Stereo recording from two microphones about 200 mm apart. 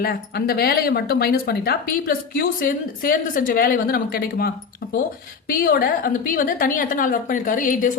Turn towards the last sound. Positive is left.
turn(degrees=40)  # may be behind; listen again after turning